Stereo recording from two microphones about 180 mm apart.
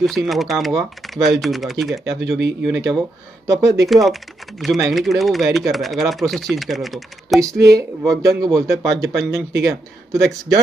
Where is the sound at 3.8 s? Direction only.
Centre (ahead or behind).